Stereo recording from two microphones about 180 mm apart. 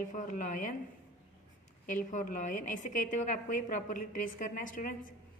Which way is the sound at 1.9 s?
45° left (ahead or behind).